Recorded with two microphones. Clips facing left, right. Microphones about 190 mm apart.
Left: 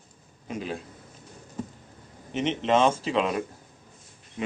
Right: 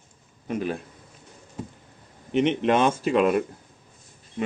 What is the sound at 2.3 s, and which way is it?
Speech, 60° right (ahead or behind).